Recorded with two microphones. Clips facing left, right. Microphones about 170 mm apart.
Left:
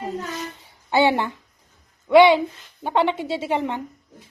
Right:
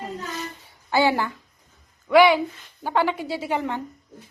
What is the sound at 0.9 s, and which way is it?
A child's voice, 20° left (ahead or behind).